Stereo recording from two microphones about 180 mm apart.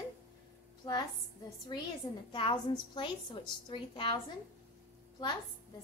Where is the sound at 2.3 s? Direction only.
25° left (ahead or behind).